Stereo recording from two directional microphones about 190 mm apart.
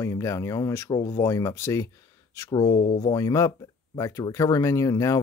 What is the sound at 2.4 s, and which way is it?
Speech, 25° left (ahead or behind).